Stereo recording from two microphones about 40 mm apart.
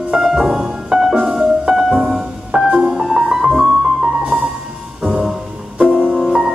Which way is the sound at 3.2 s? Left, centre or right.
Centre.